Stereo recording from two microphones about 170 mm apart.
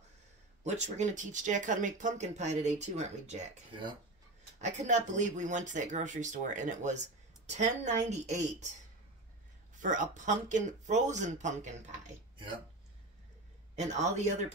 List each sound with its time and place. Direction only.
0.7 s speech: 45° right (ahead or behind)
4.6 s speech: 45° right (ahead or behind)
9.8 s speech: 45° right (ahead or behind)
13.7 s speech: 45° right (ahead or behind)